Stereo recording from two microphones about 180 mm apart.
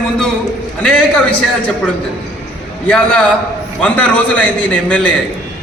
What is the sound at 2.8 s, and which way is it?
A man's voice, 5° left (ahead or behind).